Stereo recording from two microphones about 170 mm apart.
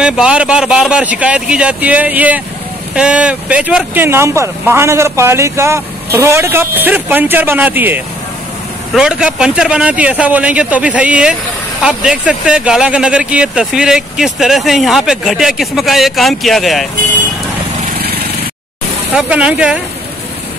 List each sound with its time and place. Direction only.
0.0 s speech: 5° right (ahead or behind)
17.9 s vehicle: 65° right (ahead or behind)
19.1 s speech: 5° right (ahead or behind)